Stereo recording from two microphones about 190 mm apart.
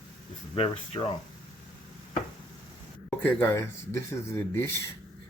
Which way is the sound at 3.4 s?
15° left (ahead or behind).